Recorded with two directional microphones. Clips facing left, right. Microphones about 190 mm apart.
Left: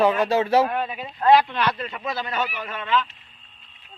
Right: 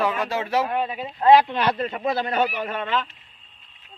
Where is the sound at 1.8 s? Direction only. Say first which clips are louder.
Right 5 dB; 45° right (ahead or behind).